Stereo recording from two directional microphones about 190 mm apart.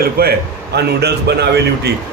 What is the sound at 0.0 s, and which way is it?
A man's voice, 55° right (ahead or behind).